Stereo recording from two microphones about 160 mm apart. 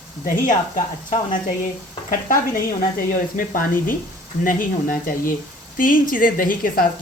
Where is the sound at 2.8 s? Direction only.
60° left (ahead or behind).